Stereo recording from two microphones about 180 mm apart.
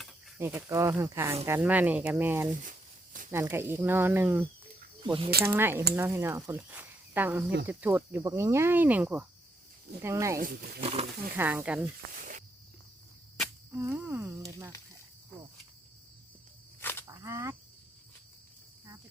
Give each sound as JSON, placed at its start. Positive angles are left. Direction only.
{"t": 0.3, "sound": "speech", "side_deg": -10}
{"t": 2.6, "sound": "a sound", "side_deg": -50}
{"t": 3.3, "sound": "speech", "side_deg": -15}
{"t": 5.0, "sound": "speech", "side_deg": -30}
{"t": 5.5, "sound": "speech", "side_deg": -15}
{"t": 10.3, "sound": "speech", "side_deg": -55}
{"t": 10.8, "sound": "speech", "side_deg": -35}
{"t": 11.3, "sound": "speech", "side_deg": -10}
{"t": 12.1, "sound": "snake", "side_deg": -50}
{"t": 13.7, "sound": "speech", "side_deg": -10}
{"t": 16.8, "sound": "a sound", "side_deg": 10}
{"t": 17.1, "sound": "a sound", "side_deg": -15}